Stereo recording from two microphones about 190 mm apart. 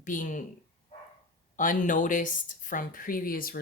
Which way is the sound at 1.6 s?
45° left (ahead or behind).